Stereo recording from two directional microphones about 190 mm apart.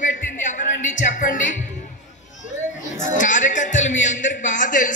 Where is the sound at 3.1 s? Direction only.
40° left (ahead or behind).